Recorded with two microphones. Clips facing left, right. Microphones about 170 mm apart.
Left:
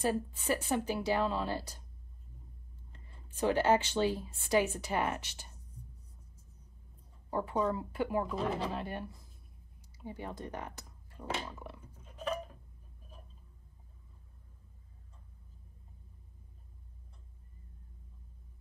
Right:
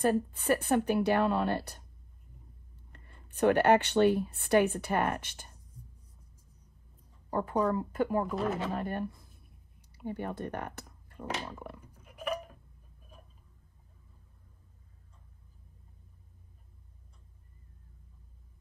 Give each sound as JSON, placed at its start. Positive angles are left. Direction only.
{"t": 0.0, "sound": "a woman's voice", "side_deg": -55}
{"t": 2.9, "sound": "speech", "side_deg": -65}
{"t": 7.2, "sound": "a woman's voice", "side_deg": -45}
{"t": 8.3, "sound": "speech", "side_deg": 0}
{"t": 8.7, "sound": "speech", "side_deg": -50}
{"t": 11.1, "sound": "a sound", "side_deg": -10}